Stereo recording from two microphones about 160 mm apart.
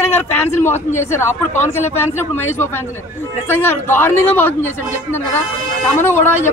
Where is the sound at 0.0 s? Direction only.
15° left (ahead or behind).